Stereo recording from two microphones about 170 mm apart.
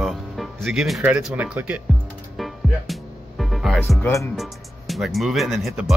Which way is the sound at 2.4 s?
Centre (ahead or behind).